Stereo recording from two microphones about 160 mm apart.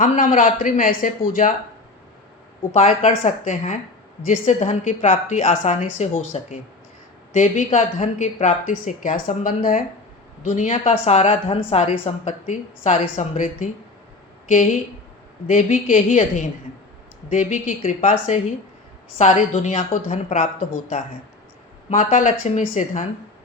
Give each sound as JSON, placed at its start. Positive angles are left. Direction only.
{"t": 0.0, "sound": "speech", "side_deg": 55}
{"t": 2.7, "sound": "speech", "side_deg": 45}